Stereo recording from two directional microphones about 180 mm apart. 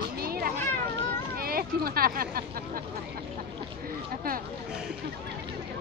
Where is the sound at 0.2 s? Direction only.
55° right (ahead or behind).